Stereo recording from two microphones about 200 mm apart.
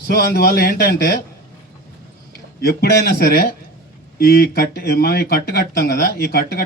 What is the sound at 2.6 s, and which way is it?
Speech, 50° left (ahead or behind).